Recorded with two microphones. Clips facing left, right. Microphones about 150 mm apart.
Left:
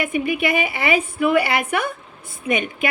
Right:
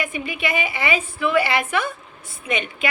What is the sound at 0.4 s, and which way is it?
A woman's voice, 55° left (ahead or behind).